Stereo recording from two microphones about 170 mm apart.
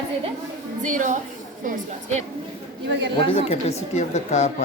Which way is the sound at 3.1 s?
30° left (ahead or behind).